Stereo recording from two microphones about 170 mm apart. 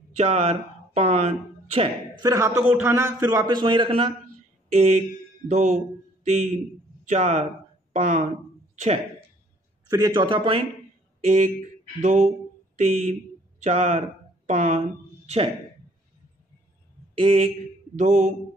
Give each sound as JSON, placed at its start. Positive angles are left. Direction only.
{"t": 0.1, "sound": "speech", "side_deg": -40}
{"t": 2.1, "sound": "a man's voice", "side_deg": -20}
{"t": 4.7, "sound": "a man's voice", "side_deg": -40}
{"t": 9.8, "sound": "a man's voice", "side_deg": -20}
{"t": 11.2, "sound": "mantra", "side_deg": -50}
{"t": 12.7, "sound": "speech", "side_deg": -40}
{"t": 17.2, "sound": "speech", "side_deg": -40}
{"t": 17.9, "sound": "mantra", "side_deg": -45}